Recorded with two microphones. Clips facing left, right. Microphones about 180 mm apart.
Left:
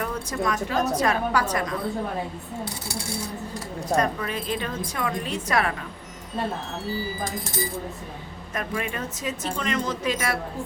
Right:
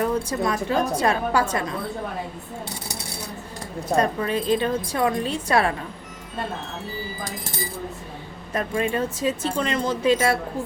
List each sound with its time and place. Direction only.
0.0 s speech: 30° right (ahead or behind)
3.9 s a woman's voice: 30° right (ahead or behind)
8.5 s speech: 30° right (ahead or behind)